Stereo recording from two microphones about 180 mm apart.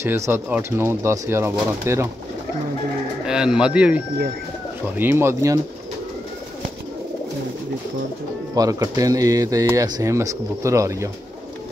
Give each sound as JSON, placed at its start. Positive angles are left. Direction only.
{"t": 0.0, "sound": "speech", "side_deg": -15}
{"t": 3.3, "sound": "speech", "side_deg": -5}
{"t": 8.5, "sound": "speech", "side_deg": -20}